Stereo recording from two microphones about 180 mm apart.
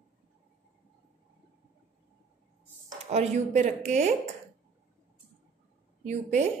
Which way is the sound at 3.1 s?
40° right (ahead or behind).